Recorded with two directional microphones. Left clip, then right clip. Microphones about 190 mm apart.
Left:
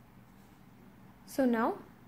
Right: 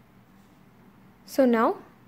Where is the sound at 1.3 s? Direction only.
30° right (ahead or behind).